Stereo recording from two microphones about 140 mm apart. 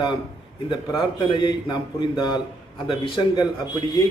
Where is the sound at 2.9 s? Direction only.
35° left (ahead or behind).